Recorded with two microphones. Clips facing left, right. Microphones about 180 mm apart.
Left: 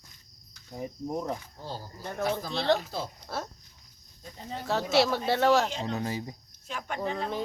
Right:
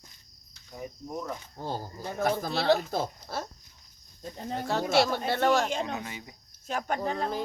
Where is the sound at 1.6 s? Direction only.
55° right (ahead or behind).